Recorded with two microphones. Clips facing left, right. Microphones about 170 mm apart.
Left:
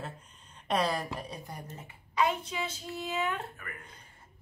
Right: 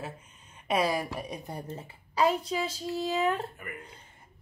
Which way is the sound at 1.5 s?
30° right (ahead or behind).